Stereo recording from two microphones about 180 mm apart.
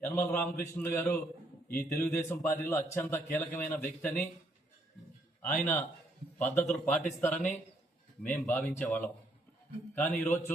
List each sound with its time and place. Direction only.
0.0 s a man's voice: 10° left (ahead or behind)
1.6 s a man's voice: 55° left (ahead or behind)
2.0 s speech: 10° left (ahead or behind)
5.4 s a man's voice: 10° left (ahead or behind)